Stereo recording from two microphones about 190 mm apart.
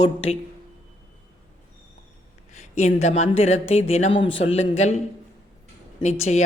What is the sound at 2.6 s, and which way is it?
Speech, 35° left (ahead or behind).